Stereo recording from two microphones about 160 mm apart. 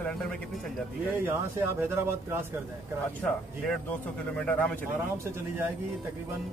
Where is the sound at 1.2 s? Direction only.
15° right (ahead or behind).